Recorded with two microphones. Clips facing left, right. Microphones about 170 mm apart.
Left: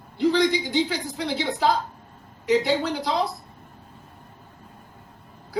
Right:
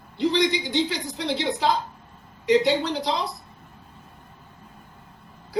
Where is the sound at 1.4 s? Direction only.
50° left (ahead or behind).